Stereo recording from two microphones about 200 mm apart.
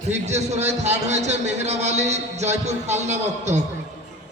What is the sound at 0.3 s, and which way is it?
A man's voice, 35° right (ahead or behind).